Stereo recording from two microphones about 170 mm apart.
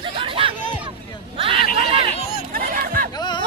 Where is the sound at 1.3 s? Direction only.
35° right (ahead or behind).